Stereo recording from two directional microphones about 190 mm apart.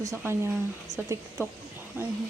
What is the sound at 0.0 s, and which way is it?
Speech, 15° right (ahead or behind).